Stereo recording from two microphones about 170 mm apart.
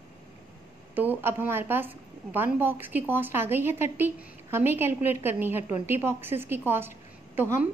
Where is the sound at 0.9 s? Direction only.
10° right (ahead or behind).